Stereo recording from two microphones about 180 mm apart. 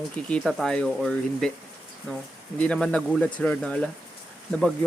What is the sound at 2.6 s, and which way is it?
Speech, 5° left (ahead or behind).